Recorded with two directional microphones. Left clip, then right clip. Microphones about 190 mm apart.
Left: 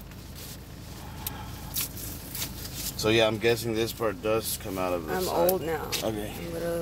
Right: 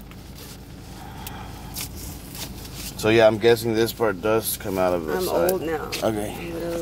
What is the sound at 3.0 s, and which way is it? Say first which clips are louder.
Speech: right 7 dB; 30° right (ahead or behind).